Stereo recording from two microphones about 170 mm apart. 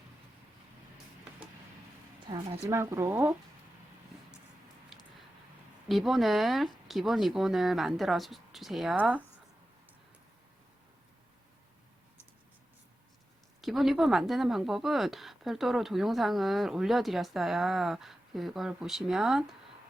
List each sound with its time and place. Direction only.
2.3 s speech: 20° right (ahead or behind)
5.9 s a woman's voice: centre (ahead or behind)
13.6 s a woman's voice: centre (ahead or behind)